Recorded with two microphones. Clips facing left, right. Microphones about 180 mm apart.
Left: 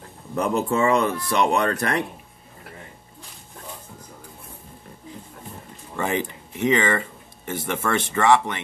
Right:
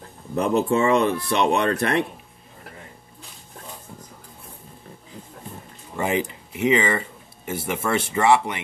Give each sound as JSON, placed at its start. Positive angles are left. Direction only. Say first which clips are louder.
{"t": 0.4, "sound": "speech", "louder": "right 2 dB", "side_deg": -30}
{"t": 5.9, "sound": "speech", "louder": "right 1 dB", "side_deg": -15}